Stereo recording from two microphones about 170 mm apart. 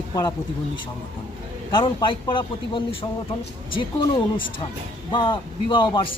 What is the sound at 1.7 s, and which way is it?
A man's voice, 30° left (ahead or behind).